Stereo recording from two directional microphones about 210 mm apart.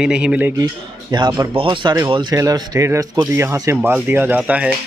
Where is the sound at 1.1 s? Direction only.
20° right (ahead or behind).